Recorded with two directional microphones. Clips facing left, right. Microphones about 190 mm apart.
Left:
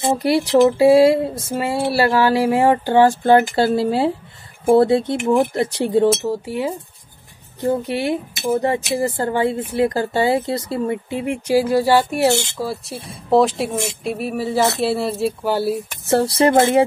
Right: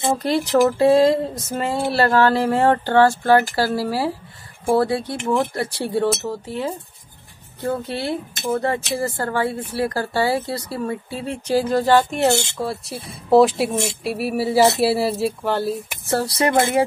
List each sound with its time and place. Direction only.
0.2 s speech: 10° left (ahead or behind)
16.1 s speech: 25° left (ahead or behind)